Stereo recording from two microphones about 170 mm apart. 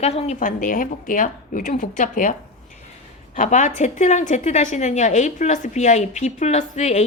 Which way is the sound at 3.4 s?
45° left (ahead or behind).